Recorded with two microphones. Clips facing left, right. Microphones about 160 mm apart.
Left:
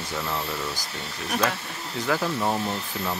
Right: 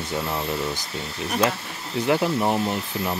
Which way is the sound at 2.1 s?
20° right (ahead or behind).